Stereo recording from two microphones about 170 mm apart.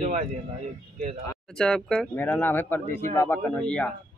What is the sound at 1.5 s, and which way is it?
A man's voice, 5° left (ahead or behind).